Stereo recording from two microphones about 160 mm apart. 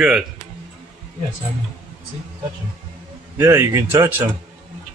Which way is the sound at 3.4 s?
15° right (ahead or behind).